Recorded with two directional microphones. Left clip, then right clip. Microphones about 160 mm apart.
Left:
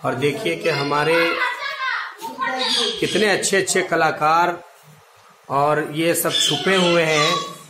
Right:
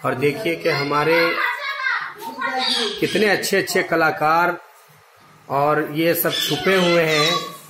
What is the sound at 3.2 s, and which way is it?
Speech, 20° right (ahead or behind).